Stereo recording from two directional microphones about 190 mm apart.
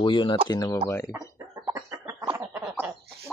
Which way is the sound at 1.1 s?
15° right (ahead or behind).